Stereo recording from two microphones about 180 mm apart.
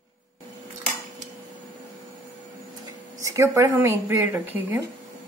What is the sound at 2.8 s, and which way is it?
Speech, 15° right (ahead or behind).